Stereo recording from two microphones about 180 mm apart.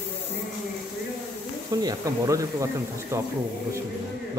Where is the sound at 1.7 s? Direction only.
20° right (ahead or behind).